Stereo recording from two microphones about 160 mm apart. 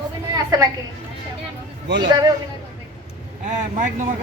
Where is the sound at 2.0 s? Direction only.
25° right (ahead or behind).